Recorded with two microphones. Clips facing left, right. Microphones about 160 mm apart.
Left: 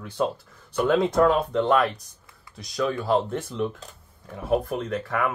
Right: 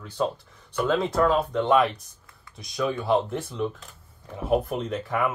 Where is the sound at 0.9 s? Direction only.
Centre (ahead or behind).